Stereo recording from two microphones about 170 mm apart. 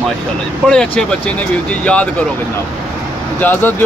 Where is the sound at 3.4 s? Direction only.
10° left (ahead or behind).